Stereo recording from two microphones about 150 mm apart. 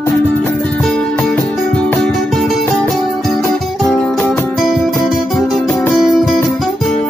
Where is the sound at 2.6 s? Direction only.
15° left (ahead or behind).